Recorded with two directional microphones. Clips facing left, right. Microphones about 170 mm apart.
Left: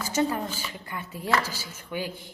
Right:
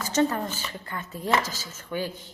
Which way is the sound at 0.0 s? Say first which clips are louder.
Right 2 dB; 10° left (ahead or behind).